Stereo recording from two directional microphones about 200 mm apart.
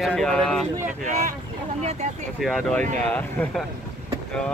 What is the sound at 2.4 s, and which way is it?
Speech, centre (ahead or behind).